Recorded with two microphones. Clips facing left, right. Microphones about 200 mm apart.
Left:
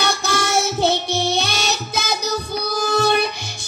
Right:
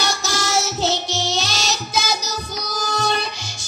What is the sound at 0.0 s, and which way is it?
Music, 60° left (ahead or behind).